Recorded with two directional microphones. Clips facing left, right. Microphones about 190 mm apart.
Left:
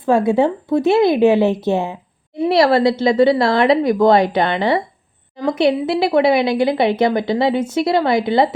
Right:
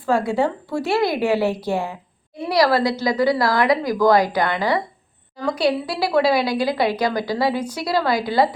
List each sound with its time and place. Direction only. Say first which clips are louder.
0.0 s a woman's voice: left 5 dB; 20° left (ahead or behind)